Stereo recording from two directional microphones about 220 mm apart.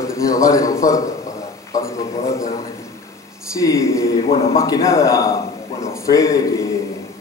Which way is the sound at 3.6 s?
15° left (ahead or behind).